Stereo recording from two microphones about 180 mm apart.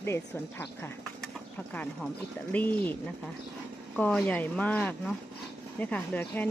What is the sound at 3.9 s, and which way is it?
A woman's voice, 10° left (ahead or behind).